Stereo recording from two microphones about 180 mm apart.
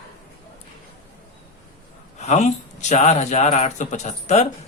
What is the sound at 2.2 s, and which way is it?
Speech, 40° left (ahead or behind).